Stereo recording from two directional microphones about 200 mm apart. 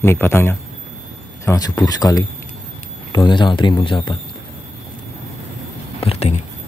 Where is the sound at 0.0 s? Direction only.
10° left (ahead or behind).